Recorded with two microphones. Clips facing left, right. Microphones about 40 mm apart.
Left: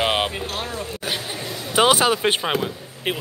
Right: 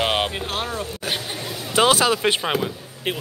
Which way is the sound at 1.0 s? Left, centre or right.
Centre.